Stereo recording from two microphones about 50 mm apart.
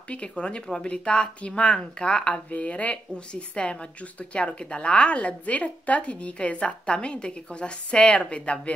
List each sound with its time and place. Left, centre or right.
0.1 s a woman's voice: left